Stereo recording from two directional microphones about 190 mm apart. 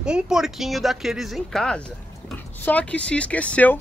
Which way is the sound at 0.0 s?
5° right (ahead or behind).